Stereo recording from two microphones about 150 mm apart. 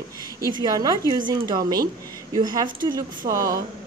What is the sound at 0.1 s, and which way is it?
Speech, 20° left (ahead or behind).